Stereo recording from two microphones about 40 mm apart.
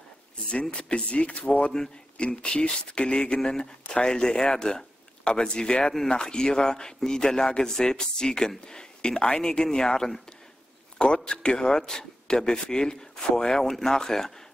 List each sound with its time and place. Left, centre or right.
0.7 s a man's voice: left; by 14.3 s centre